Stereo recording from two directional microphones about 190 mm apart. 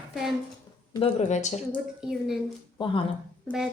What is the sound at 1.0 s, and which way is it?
Speech, 35° left (ahead or behind).